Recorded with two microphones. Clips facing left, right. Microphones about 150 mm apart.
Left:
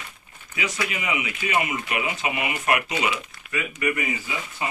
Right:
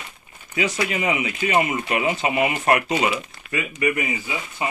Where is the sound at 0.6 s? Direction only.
35° right (ahead or behind).